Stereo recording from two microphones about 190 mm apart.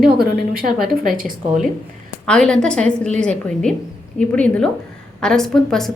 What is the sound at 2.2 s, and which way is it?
A woman's voice, 5° left (ahead or behind).